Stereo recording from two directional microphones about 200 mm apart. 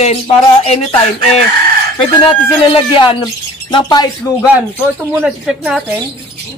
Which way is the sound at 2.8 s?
25° left (ahead or behind).